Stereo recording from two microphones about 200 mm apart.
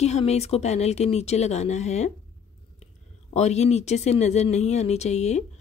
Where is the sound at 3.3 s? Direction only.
35° left (ahead or behind).